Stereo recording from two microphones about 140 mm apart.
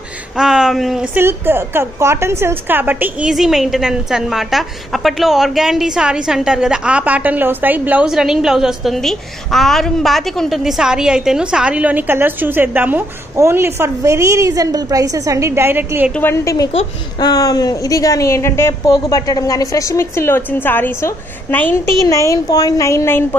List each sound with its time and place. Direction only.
0.4 s speech: 5° right (ahead or behind)
1.1 s a woman's voice: 15° right (ahead or behind)
16.2 s a woman's voice: 15° left (ahead or behind)
17.2 s a woman's voice: 25° left (ahead or behind)